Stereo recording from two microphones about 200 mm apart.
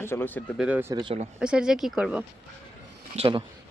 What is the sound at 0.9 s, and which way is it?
Speech, 25° right (ahead or behind).